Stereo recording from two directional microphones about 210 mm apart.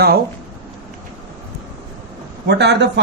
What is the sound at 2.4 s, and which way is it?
Speech, 55° right (ahead or behind).